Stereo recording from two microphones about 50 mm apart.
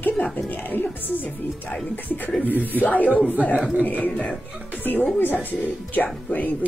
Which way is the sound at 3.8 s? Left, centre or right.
Left.